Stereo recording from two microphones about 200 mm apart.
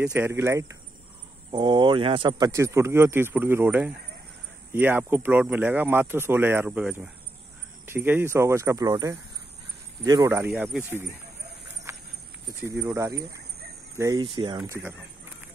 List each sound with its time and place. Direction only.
0.0 s speech: 10° right (ahead or behind)
11.9 s walk: 15° right (ahead or behind)
12.6 s speech: 15° right (ahead or behind)
14.6 s speech: 10° right (ahead or behind)